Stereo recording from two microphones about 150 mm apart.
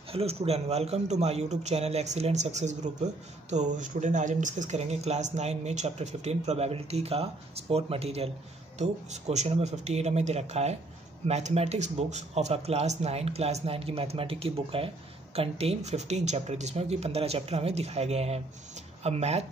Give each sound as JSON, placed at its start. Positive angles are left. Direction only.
{"t": 0.1, "sound": "speech", "side_deg": -40}